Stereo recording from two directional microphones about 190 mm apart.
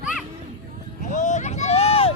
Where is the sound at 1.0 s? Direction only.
40° left (ahead or behind).